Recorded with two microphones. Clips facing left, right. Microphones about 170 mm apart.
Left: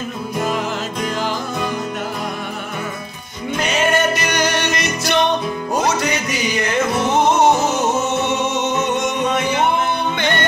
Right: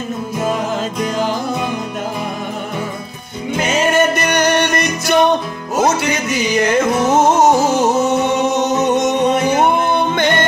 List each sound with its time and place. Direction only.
4.1 s music: 55° right (ahead or behind)
8.8 s music: 40° right (ahead or behind)